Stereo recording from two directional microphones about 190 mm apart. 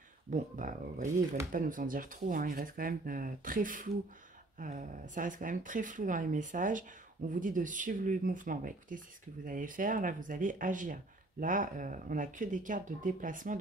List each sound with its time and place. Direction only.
0.3 s speech: 45° right (ahead or behind)